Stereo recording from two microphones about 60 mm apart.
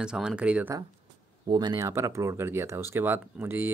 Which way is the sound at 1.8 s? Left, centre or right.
Right.